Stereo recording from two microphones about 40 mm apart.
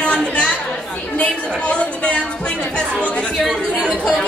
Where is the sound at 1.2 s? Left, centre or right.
Left.